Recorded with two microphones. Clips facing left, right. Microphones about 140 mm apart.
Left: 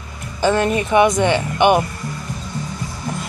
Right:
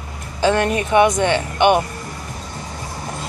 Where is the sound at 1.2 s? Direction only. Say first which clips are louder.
Left 1 dB; 10° left (ahead or behind).